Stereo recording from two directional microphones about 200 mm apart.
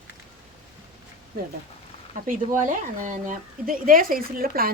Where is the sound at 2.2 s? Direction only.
40° right (ahead or behind).